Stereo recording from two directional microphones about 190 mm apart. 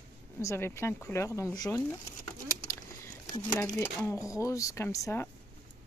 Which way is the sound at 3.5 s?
15° left (ahead or behind).